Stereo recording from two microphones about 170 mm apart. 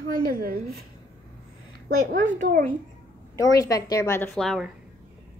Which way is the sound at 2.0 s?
50° right (ahead or behind).